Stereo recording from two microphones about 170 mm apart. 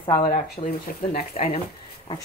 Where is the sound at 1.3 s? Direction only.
35° left (ahead or behind).